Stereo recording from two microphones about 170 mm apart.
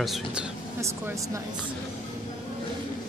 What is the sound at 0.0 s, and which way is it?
Speech, 5° right (ahead or behind).